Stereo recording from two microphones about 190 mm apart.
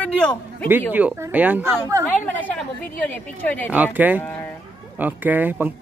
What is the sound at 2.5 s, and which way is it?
Speech, 10° left (ahead or behind).